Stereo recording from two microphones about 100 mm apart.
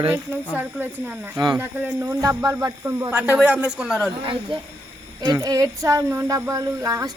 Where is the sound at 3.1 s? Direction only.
15° right (ahead or behind).